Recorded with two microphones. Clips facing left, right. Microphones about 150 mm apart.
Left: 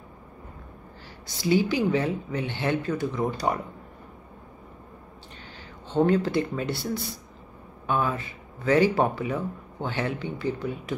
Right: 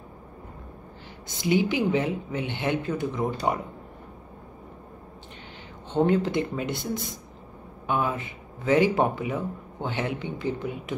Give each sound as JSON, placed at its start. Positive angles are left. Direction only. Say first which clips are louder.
{"t": 1.2, "sound": "speech", "louder": "left 1 dB", "side_deg": -20}
{"t": 5.9, "sound": "speech", "louder": "even", "side_deg": -20}